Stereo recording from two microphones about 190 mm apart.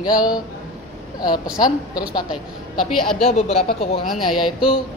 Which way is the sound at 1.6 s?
20° left (ahead or behind).